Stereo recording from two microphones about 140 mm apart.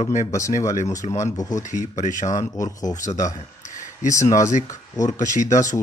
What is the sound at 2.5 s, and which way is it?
Speech, 25° left (ahead or behind).